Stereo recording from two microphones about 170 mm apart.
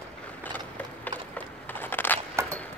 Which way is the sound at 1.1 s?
10° left (ahead or behind).